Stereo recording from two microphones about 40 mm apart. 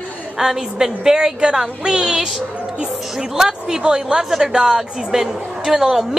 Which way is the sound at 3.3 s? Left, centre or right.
Centre.